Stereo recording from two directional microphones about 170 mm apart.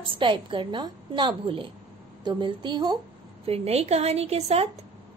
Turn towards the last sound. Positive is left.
turn(degrees=-35)  # may be behind; listen again after turning